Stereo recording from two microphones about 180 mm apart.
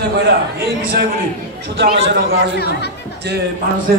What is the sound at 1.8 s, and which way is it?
Speech, 60° right (ahead or behind).